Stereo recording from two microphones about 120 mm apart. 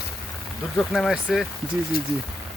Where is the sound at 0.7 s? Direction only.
5° left (ahead or behind).